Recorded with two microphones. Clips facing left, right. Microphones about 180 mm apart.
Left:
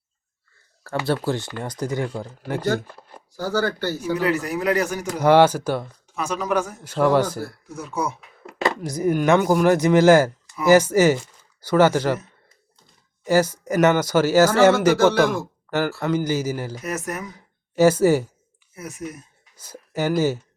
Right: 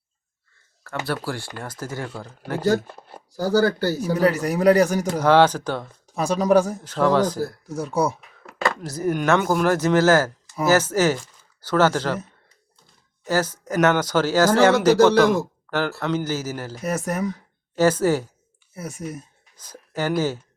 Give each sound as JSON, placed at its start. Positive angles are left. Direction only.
{"t": 0.9, "sound": "speech", "side_deg": 30}
{"t": 3.3, "sound": "a man's voice", "side_deg": -35}
{"t": 5.2, "sound": "speech", "side_deg": 10}
{"t": 6.1, "sound": "a man's voice", "side_deg": -35}
{"t": 6.8, "sound": "speech", "side_deg": 10}
{"t": 7.4, "sound": "a man's voice", "side_deg": -35}
{"t": 8.6, "sound": "speech", "side_deg": 15}
{"t": 13.2, "sound": "speech", "side_deg": 10}
{"t": 16.8, "sound": "a man's voice", "side_deg": -30}
{"t": 17.3, "sound": "a woman's voice", "side_deg": 10}
{"t": 18.7, "sound": "speech", "side_deg": -30}
{"t": 19.5, "sound": "speech", "side_deg": 10}